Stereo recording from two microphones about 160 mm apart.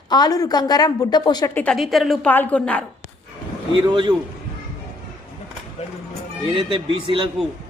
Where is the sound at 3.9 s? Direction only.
30° right (ahead or behind).